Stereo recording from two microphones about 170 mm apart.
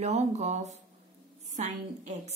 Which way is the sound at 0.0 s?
40° right (ahead or behind).